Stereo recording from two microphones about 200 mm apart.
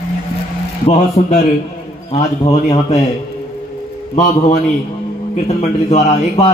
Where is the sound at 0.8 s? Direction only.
35° left (ahead or behind).